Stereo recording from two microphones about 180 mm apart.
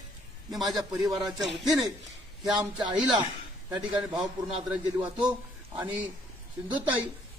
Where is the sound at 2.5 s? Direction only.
25° right (ahead or behind).